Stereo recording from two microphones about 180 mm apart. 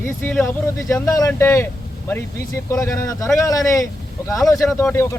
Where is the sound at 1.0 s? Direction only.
20° left (ahead or behind).